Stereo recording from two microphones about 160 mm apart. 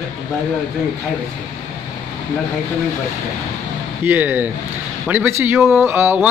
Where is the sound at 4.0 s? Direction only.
15° right (ahead or behind).